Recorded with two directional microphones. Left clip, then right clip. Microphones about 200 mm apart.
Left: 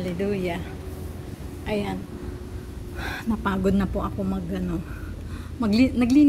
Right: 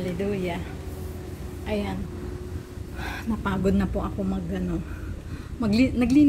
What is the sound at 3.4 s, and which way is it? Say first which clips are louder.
A woman's voice: left 1 dB; 10° left (ahead or behind).